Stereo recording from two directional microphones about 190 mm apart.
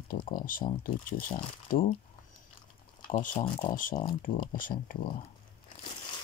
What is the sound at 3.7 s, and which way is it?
Speech, 45° left (ahead or behind).